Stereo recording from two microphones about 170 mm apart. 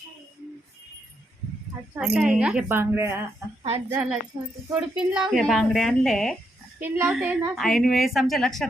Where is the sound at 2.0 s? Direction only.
5° right (ahead or behind).